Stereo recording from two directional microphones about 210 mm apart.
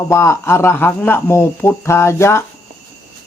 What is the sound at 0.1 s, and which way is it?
Speech, 10° left (ahead or behind).